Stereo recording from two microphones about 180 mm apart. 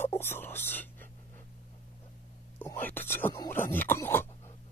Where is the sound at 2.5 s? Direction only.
10° left (ahead or behind).